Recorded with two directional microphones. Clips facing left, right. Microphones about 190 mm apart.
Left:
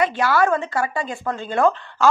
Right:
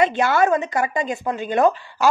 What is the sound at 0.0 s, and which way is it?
A woman's voice, 20° right (ahead or behind).